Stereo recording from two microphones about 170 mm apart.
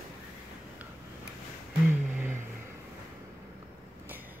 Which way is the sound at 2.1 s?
10° right (ahead or behind).